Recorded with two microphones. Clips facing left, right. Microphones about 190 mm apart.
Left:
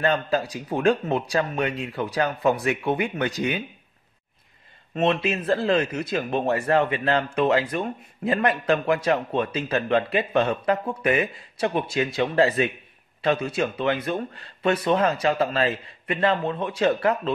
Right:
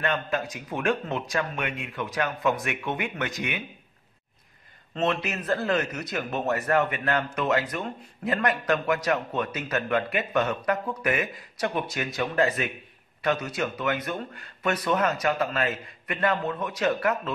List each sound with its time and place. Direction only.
0.0 s speech: 35° left (ahead or behind)
4.9 s speech: 25° left (ahead or behind)